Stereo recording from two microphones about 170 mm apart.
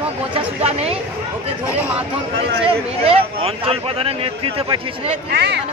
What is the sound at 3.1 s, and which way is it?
Speech, 35° right (ahead or behind).